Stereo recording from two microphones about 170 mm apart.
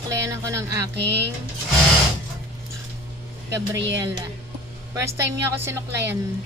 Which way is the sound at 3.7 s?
90° right.